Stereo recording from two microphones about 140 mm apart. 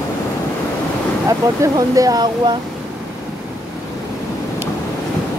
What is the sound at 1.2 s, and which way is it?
Speech, 25° right (ahead or behind).